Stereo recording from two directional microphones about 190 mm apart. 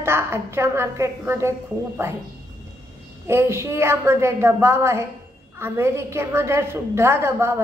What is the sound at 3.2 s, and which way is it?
A woman's voice, 15° right (ahead or behind).